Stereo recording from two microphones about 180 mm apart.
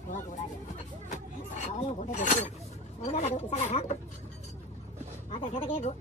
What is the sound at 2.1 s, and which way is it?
Speech, 40° left (ahead or behind).